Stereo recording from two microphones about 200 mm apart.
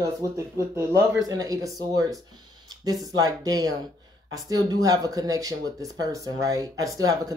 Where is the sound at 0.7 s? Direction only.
15° right (ahead or behind).